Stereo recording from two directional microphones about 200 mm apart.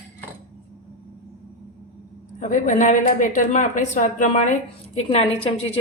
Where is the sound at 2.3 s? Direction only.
40° left (ahead or behind).